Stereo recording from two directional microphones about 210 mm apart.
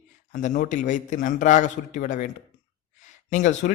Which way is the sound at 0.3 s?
40° left (ahead or behind).